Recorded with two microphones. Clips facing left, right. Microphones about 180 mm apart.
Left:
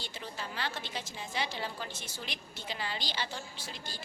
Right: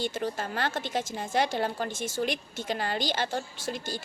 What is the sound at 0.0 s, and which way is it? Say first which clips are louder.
A woman's voice: right 11 dB; 50° right (ahead or behind).